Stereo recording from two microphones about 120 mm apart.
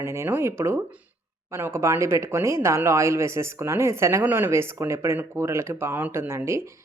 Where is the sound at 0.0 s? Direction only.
20° right (ahead or behind).